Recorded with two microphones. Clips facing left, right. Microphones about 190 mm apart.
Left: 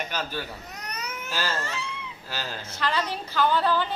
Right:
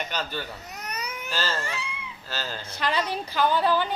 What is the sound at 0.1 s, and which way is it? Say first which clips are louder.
Speech: even; 5° left (ahead or behind).